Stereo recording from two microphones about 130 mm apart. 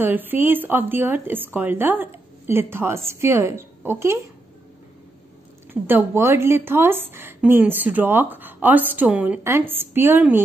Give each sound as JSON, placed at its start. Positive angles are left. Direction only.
{"t": 0.0, "sound": "a woman's voice", "side_deg": -15}
{"t": 5.7, "sound": "a woman's voice", "side_deg": -15}